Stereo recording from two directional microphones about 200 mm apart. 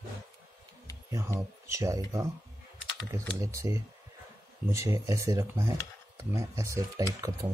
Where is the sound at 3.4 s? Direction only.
15° right (ahead or behind).